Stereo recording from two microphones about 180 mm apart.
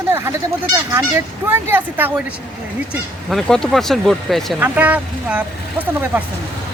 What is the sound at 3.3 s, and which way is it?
Speech, centre (ahead or behind).